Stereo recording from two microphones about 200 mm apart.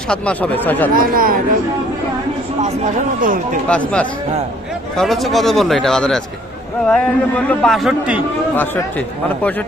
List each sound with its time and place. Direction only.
0.1 s speech: 5° left (ahead or behind)
0.9 s speech: 45° right (ahead or behind)
2.6 s speech: 35° right (ahead or behind)
3.7 s a man's voice: 5° left (ahead or behind)
8.5 s speech: 10° left (ahead or behind)